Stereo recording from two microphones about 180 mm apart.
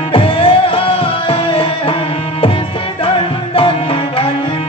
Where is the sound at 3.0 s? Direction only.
30° left (ahead or behind).